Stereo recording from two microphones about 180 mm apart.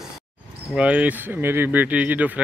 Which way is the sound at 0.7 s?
5° right (ahead or behind).